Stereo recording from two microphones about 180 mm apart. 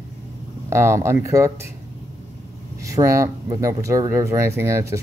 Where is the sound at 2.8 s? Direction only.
15° right (ahead or behind).